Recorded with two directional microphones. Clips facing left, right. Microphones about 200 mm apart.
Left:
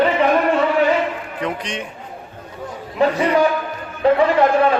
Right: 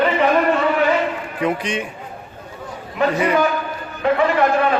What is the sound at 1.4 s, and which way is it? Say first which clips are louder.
Speech: right 4 dB; 5° right (ahead or behind).